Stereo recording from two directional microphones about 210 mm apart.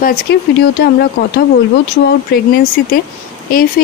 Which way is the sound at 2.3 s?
45° left (ahead or behind).